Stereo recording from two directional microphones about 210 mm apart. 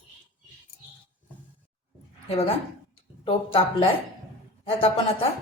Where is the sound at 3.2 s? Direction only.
25° left (ahead or behind).